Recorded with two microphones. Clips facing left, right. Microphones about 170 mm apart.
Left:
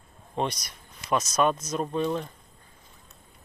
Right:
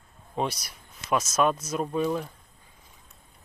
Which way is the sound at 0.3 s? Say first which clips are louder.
Even; 5° right (ahead or behind).